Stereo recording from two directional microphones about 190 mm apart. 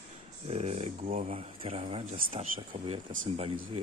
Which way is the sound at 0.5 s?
35° right (ahead or behind).